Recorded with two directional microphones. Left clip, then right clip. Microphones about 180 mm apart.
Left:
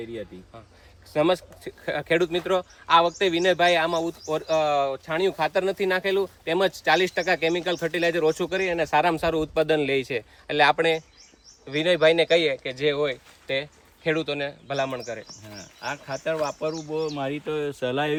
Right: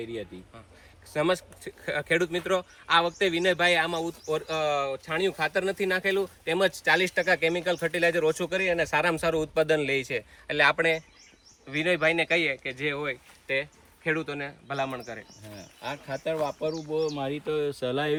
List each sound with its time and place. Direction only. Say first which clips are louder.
1.1 s speech: left 4 dB; 55° left (ahead or behind)
15.5 s speech: left 4 dB; 10° right (ahead or behind); by 18.2 s 5° left (ahead or behind)